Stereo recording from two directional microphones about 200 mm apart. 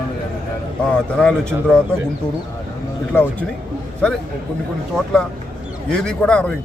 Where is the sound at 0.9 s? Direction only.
5° left (ahead or behind).